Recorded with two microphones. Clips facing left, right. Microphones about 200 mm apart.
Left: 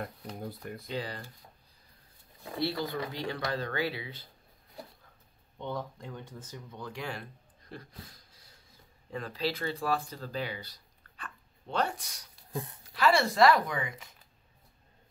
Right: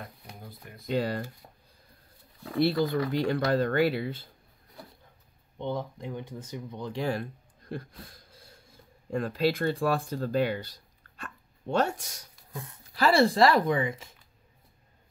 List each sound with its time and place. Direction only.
0.0 s shuffling cards: 50° left (ahead or behind)
0.9 s speech: 50° right (ahead or behind)
2.8 s speech: 50° right (ahead or behind)
5.6 s speech: 15° right (ahead or behind)
7.0 s speech: 45° right (ahead or behind)
9.1 s speech: 50° right (ahead or behind)
12.9 s speech: 35° right (ahead or behind)